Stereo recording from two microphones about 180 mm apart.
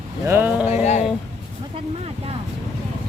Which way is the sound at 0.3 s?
10° right (ahead or behind).